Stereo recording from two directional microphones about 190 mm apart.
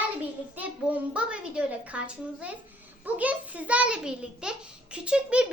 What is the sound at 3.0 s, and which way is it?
A child's voice, 5° right (ahead or behind).